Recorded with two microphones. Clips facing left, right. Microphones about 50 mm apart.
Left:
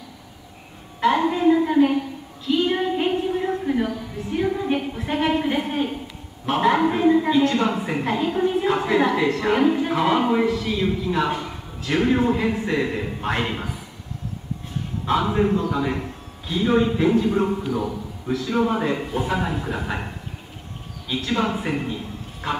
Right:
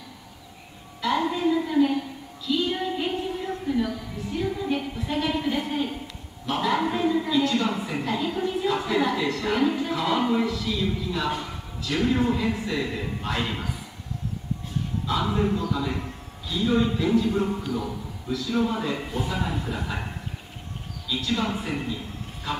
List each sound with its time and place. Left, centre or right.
1.0 s a sound: left
7.2 s a man's voice: left
12.2 s a woman's voice: left
15.2 s a woman's voice: left
15.5 s a man's voice: left
17.5 s speech: centre
18.3 s a man's voice: left
19.5 s speech: centre
21.2 s a woman's voice: left